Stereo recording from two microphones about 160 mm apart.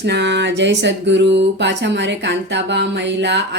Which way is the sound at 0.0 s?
90° right.